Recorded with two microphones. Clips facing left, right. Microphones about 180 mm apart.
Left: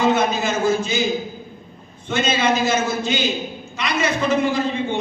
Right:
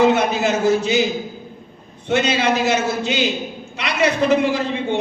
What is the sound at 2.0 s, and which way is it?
A man's voice, 70° right (ahead or behind).